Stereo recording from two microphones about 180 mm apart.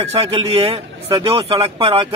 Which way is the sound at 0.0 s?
30° right (ahead or behind).